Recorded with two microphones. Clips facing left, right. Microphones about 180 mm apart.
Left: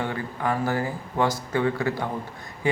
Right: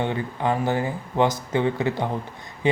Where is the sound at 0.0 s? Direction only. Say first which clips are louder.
Right 3 dB; 20° right (ahead or behind).